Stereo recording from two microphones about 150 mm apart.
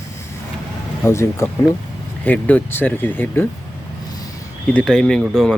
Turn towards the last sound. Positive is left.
turn(degrees=5)  # may be behind; listen again after turning